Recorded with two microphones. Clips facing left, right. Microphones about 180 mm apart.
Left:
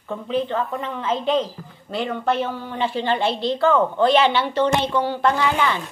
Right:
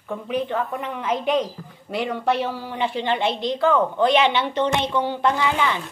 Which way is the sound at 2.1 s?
5° right (ahead or behind).